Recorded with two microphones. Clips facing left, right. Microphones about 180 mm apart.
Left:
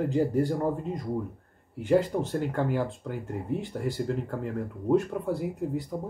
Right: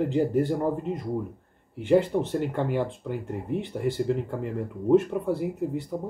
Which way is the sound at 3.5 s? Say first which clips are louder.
Right 3 dB; 70° right (ahead or behind).